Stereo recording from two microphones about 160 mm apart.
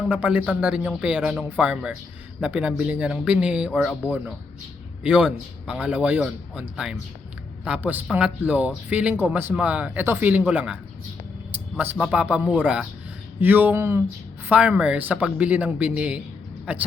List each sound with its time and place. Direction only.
0.1 s speech: 10° right (ahead or behind)
5.0 s speech: 5° right (ahead or behind)
11.8 s speech: 10° right (ahead or behind)